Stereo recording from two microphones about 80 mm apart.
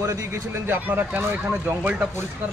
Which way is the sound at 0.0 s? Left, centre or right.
Right.